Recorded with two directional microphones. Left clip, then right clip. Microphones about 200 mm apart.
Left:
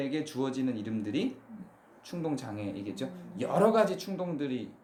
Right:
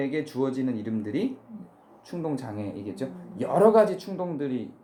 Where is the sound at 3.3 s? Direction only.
15° right (ahead or behind).